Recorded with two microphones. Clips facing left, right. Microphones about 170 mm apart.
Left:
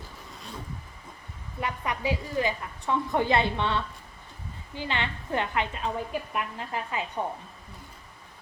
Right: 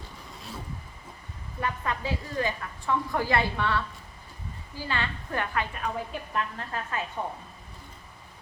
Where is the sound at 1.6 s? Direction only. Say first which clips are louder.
Left 1 dB; 15° left (ahead or behind).